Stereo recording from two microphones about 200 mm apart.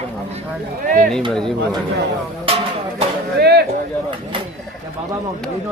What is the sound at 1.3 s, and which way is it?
Speech, 5° left (ahead or behind).